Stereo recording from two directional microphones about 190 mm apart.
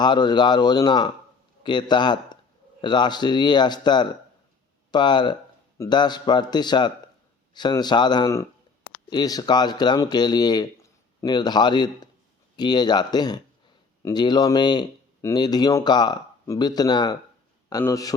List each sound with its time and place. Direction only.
0.0 s a man's voice: 25° left (ahead or behind)